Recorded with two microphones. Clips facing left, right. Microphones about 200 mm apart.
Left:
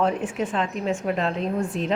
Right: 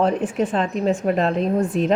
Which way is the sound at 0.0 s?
35° right (ahead or behind).